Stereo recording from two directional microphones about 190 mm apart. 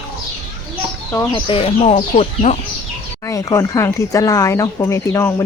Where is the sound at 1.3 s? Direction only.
25° left (ahead or behind).